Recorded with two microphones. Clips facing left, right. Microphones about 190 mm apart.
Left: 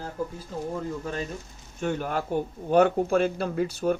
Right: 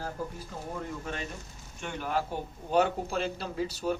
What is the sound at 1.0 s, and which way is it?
Speech, 35° left (ahead or behind).